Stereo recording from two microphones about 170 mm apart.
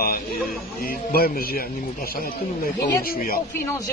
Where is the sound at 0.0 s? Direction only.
65° left (ahead or behind).